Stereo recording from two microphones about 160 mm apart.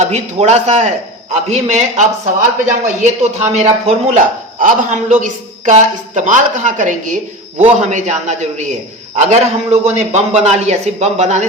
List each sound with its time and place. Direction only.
0.0 s a woman's voice: 45° right (ahead or behind)